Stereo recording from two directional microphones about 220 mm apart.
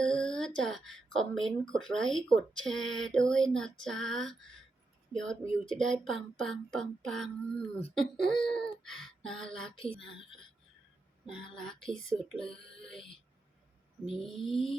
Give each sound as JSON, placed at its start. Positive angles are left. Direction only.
{"t": 0.0, "sound": "speech", "side_deg": 5}
{"t": 9.6, "sound": "speech", "side_deg": 25}
{"t": 11.5, "sound": "speech", "side_deg": 5}